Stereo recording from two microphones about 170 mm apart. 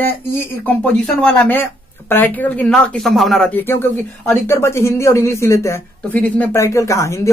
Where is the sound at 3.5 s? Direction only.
15° left (ahead or behind).